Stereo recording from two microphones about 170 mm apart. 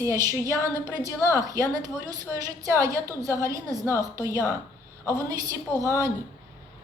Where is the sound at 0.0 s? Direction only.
20° right (ahead or behind).